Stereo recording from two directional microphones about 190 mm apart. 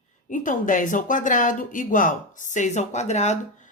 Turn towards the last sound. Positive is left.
turn(degrees=40)  # may be behind; listen again after turning